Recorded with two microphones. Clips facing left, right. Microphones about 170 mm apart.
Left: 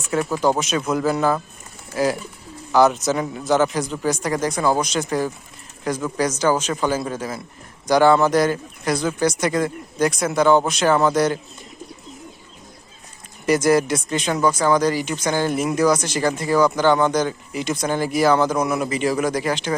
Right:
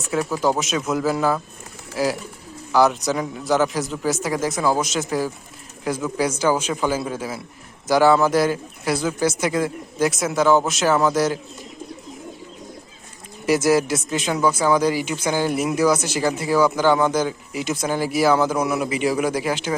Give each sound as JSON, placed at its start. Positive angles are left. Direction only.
{"t": 0.1, "sound": "speech", "side_deg": 0}
{"t": 13.4, "sound": "speech", "side_deg": -5}